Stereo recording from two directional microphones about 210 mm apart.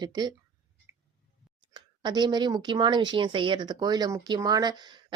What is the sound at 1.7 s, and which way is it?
A woman's voice, 20° right (ahead or behind).